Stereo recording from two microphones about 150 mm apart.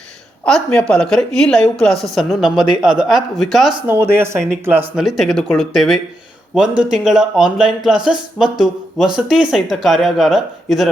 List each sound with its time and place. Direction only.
0.4 s speech: 5° left (ahead or behind)
3.8 s speech: 15° right (ahead or behind)
5.0 s speech: centre (ahead or behind)